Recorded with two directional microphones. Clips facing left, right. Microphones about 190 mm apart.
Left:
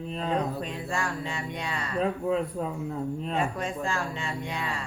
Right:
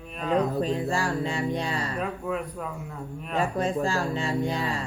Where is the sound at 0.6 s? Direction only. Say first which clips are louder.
Right 6 dB; 35° right (ahead or behind).